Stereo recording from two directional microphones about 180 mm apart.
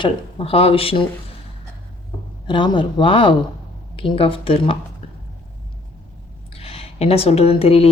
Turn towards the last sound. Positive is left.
turn(degrees=35)  # may be behind; listen again after turning